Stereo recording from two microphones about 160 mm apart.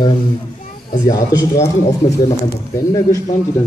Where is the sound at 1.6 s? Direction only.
20° left (ahead or behind).